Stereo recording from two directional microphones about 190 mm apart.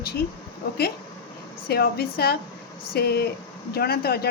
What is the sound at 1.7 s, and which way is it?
A woman's voice, 55° left (ahead or behind).